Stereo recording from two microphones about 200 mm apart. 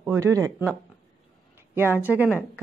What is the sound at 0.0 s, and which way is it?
Speech, 15° right (ahead or behind).